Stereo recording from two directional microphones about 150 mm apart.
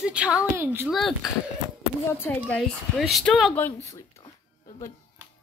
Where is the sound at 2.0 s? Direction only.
15° left (ahead or behind).